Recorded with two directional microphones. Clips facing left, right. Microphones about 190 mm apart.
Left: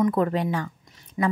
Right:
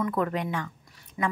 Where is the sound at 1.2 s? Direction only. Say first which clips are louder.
Left 5 dB; 25° left (ahead or behind).